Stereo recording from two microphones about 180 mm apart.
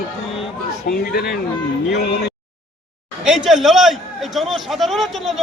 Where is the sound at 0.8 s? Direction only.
60° left (ahead or behind).